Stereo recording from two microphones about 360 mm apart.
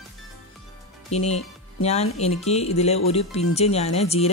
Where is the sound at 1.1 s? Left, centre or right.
Centre.